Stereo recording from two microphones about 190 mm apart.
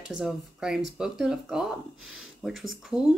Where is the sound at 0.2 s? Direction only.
5° right (ahead or behind).